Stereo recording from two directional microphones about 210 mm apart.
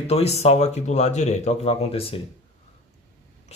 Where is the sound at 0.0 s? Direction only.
30° left (ahead or behind).